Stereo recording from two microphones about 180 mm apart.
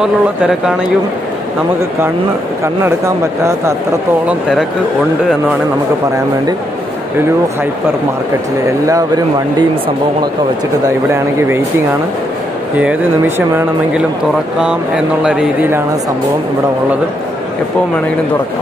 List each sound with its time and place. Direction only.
4.3 s speech: 5° right (ahead or behind)
8.8 s speech: 20° right (ahead or behind)
11.3 s speech: 15° right (ahead or behind)
15.2 s speech: 5° right (ahead or behind)